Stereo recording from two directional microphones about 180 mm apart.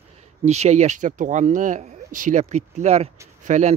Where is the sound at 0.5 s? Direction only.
40° right (ahead or behind).